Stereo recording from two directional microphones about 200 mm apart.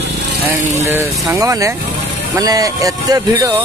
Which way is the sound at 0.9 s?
15° right (ahead or behind).